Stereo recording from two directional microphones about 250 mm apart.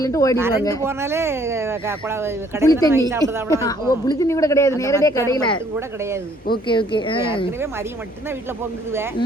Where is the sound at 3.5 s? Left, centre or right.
Centre.